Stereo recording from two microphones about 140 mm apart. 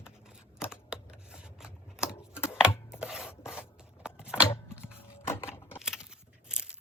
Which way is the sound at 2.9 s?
5° right (ahead or behind).